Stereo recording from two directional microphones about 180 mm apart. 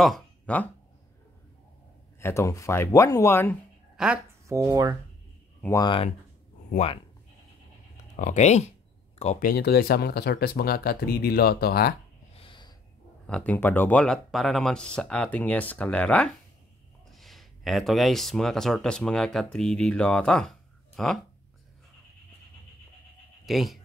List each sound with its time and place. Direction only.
0.0 s speech: 5° left (ahead or behind)
2.1 s speech: 15° left (ahead or behind)
3.9 s a sound: 5° right (ahead or behind)
4.5 s speech: 20° right (ahead or behind)
5.6 s speech: 15° left (ahead or behind)
8.2 s speech: 40° left (ahead or behind); by 11.9 s 60° left (ahead or behind)
12.4 s snort: 25° left (ahead or behind)
13.3 s speech: 10° left (ahead or behind)
23.4 s speech: centre (ahead or behind)